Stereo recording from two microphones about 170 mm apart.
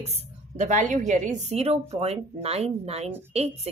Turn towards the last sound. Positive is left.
turn(degrees=-35)  # may be behind; listen again after turning